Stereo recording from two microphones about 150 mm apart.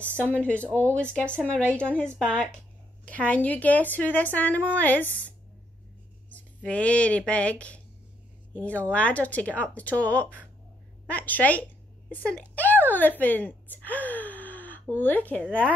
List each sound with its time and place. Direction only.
0.3 s a woman's voice: 10° left (ahead or behind)
6.3 s a woman's voice: 10° left (ahead or behind)
12.3 s gasp: 10° left (ahead or behind)